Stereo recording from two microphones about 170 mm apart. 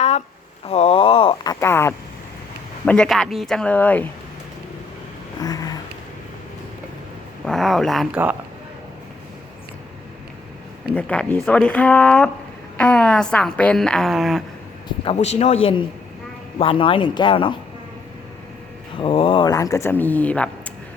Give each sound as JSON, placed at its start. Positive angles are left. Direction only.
{"t": 0.6, "sound": "speech", "side_deg": 35}
{"t": 1.5, "sound": "a woman's voice", "side_deg": 15}
{"t": 5.4, "sound": "a sound", "side_deg": 20}
{"t": 7.4, "sound": "a woman's voice", "side_deg": 0}
{"t": 10.9, "sound": "a woman's voice", "side_deg": 5}
{"t": 14.8, "sound": "speech", "side_deg": 35}
{"t": 18.9, "sound": "speech", "side_deg": 30}